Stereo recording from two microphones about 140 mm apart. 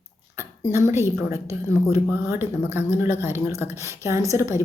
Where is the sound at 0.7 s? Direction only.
20° right (ahead or behind).